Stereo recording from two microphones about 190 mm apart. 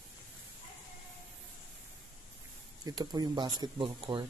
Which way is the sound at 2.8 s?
20° right (ahead or behind).